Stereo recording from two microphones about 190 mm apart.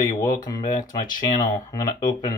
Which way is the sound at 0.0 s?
20° left (ahead or behind).